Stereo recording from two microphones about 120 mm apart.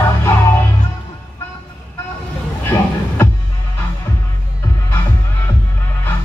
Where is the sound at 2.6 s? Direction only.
20° left (ahead or behind).